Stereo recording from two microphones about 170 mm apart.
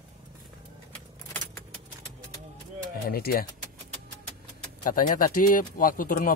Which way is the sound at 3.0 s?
65° left (ahead or behind).